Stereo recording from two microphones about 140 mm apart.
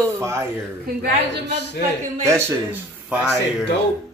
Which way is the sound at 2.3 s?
20° right (ahead or behind).